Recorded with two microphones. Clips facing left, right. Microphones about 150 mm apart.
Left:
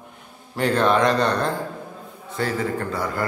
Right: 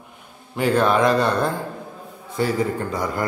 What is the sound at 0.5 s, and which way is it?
A man's voice, 5° right (ahead or behind).